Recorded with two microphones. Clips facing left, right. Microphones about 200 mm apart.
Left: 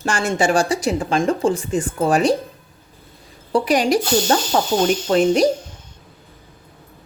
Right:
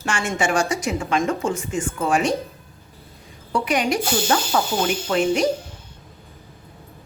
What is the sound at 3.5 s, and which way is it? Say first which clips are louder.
A woman's voice: left 5 dB; 35° left (ahead or behind).